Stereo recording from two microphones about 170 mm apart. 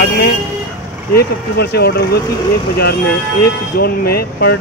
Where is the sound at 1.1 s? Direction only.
70° left (ahead or behind).